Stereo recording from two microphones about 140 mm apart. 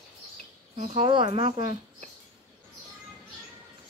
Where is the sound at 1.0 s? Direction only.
35° right (ahead or behind).